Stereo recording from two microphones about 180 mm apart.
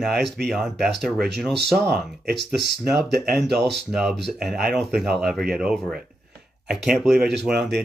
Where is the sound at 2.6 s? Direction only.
65° right (ahead or behind).